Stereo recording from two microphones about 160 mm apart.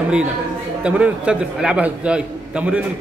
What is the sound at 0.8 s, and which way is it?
A man's voice, 5° right (ahead or behind).